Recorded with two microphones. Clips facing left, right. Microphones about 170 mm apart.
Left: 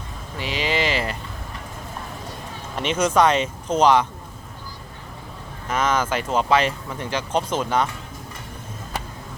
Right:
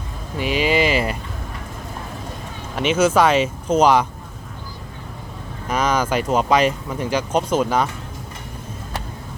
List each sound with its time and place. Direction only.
0.3 s a sound: 15° right (ahead or behind)
3.0 s speech: 5° right (ahead or behind)
5.6 s speech: 15° right (ahead or behind)